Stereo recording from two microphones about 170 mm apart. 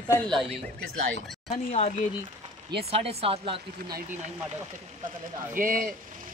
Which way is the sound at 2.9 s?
35° right (ahead or behind).